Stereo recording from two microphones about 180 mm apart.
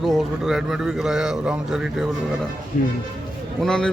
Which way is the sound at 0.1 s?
Centre (ahead or behind).